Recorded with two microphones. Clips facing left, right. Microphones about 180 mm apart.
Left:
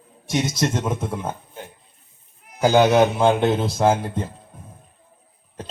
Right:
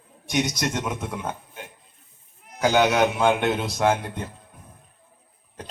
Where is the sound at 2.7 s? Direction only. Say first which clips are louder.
Left 5 dB; 25° left (ahead or behind).